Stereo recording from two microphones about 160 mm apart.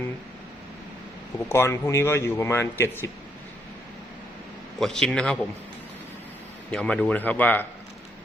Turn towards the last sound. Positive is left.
turn(degrees=10)  # may be behind; listen again after turning